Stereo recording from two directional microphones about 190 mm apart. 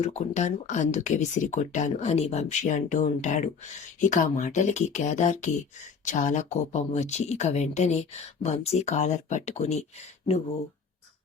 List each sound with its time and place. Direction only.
0.0 s speech: 35° left (ahead or behind)